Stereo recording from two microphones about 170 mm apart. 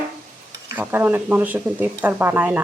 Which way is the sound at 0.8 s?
10° right (ahead or behind).